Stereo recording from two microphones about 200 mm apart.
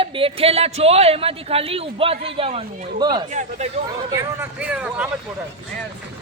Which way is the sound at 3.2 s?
35° right (ahead or behind).